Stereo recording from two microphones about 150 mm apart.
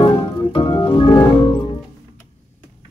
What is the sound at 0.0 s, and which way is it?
Organ, 35° left (ahead or behind).